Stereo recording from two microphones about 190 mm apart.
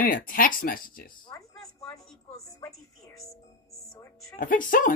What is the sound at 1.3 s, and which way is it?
A woman's voice, 15° left (ahead or behind).